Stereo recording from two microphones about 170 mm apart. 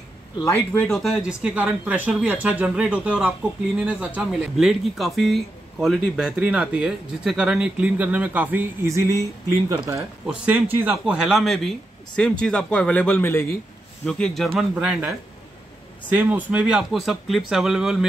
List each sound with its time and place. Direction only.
0.5 s speech: 5° left (ahead or behind); by 10.0 s 15° right (ahead or behind)
10.2 s speech: 5° right (ahead or behind)